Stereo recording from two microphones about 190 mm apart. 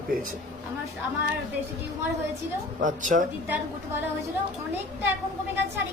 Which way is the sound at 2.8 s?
45° right (ahead or behind).